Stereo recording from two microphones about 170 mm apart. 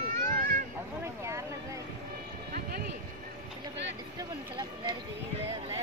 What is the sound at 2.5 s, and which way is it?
Music, 60° right (ahead or behind).